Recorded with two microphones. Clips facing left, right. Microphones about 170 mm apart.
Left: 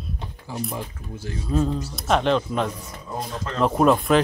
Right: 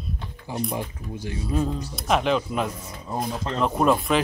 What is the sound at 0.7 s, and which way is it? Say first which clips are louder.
Speech: right 2 dB; 15° right (ahead or behind).